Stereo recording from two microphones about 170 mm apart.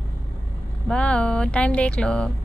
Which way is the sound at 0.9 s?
5° left (ahead or behind).